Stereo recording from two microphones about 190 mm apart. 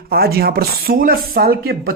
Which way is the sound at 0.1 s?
55° right (ahead or behind).